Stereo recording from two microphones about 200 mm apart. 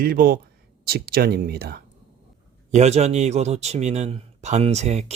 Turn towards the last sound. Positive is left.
turn(degrees=-35)  # may be behind; listen again after turning